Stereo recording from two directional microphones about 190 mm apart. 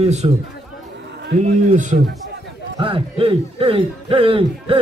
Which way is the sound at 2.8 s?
30° right (ahead or behind).